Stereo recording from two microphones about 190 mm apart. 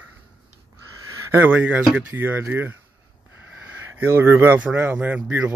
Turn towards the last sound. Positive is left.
turn(degrees=-10)  # may be behind; listen again after turning